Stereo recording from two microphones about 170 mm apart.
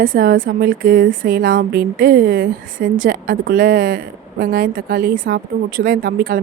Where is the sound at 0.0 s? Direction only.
55° right (ahead or behind).